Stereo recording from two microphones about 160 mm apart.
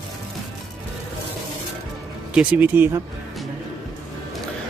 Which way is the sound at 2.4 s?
10° right (ahead or behind).